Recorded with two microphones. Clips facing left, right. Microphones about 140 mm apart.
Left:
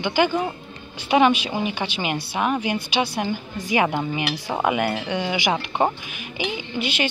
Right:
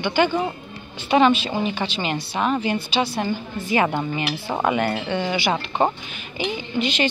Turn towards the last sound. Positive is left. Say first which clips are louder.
# right 3 dB
turn(degrees=10)  # may be behind; listen again after turning